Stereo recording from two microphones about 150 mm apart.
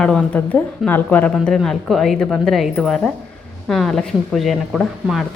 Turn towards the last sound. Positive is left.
turn(degrees=0)  # may be behind; listen again after turning